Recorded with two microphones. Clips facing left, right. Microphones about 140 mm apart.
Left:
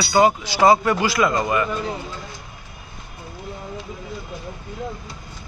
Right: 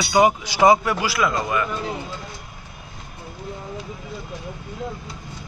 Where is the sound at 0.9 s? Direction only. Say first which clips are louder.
Left 3 dB; 5° right (ahead or behind).